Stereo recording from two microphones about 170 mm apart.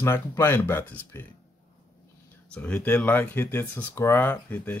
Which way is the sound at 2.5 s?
5° left (ahead or behind).